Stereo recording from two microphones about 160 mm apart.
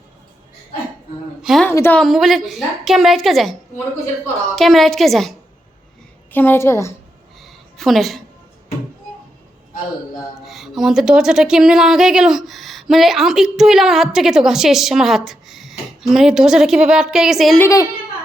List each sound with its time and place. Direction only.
1.4 s a woman's voice: centre (ahead or behind)
1.6 s a woman's voice: 10° left (ahead or behind)
2.0 s speech: centre (ahead or behind)
4.5 s speech: centre (ahead or behind)
6.3 s a woman's voice: 10° left (ahead or behind)
7.4 s a sound: centre (ahead or behind)
10.4 s speech: centre (ahead or behind)
17.6 s a child's voice: 20° left (ahead or behind)